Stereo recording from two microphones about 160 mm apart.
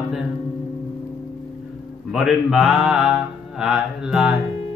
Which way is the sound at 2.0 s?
5° right (ahead or behind).